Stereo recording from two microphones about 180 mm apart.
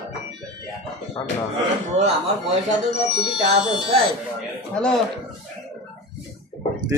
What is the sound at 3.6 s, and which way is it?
Speech, 25° left (ahead or behind).